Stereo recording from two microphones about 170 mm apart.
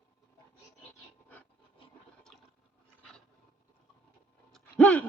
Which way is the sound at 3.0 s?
5° left (ahead or behind).